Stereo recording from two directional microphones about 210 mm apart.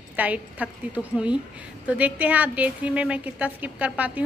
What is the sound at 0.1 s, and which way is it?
A woman's voice, 5° right (ahead or behind).